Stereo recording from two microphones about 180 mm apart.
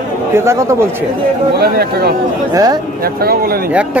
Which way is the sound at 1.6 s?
60° right (ahead or behind).